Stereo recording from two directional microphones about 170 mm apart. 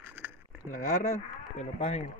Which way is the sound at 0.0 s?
10° right (ahead or behind).